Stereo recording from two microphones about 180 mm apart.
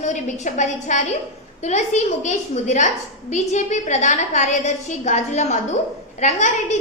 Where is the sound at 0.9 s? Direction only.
45° left (ahead or behind).